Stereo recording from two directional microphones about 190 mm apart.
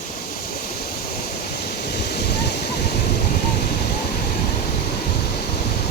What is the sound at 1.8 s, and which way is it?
Waterfall, 55° left (ahead or behind).